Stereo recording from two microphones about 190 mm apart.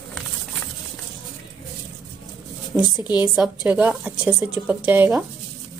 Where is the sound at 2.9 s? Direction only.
20° left (ahead or behind).